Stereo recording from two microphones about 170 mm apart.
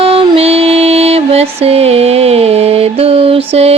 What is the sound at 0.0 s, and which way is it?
Music, 35° right (ahead or behind).